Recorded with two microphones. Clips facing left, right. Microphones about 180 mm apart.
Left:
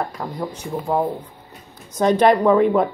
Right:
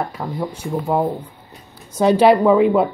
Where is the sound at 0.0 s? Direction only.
Centre (ahead or behind).